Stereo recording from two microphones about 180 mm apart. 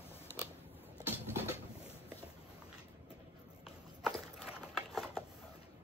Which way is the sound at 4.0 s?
Centre (ahead or behind).